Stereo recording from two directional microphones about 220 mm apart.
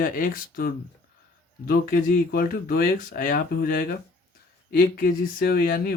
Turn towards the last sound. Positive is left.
turn(degrees=40)  # may be behind; listen again after turning